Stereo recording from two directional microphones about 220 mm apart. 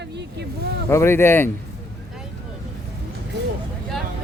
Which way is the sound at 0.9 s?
10° left (ahead or behind).